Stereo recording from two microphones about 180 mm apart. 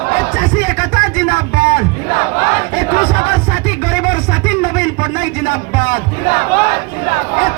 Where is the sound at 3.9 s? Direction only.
55° left (ahead or behind).